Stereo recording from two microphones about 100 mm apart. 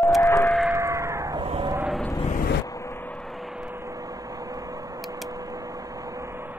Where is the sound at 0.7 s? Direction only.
30° right (ahead or behind).